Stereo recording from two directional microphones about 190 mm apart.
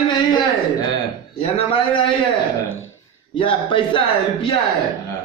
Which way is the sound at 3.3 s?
25° left (ahead or behind).